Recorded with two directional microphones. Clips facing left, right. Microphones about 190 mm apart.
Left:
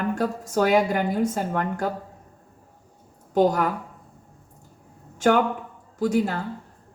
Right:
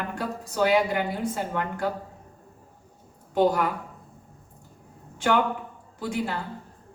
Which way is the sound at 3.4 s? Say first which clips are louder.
Left 2 dB; 45° left (ahead or behind).